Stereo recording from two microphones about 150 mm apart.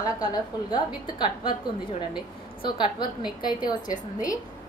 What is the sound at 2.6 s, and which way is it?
A woman's voice, 30° left (ahead or behind).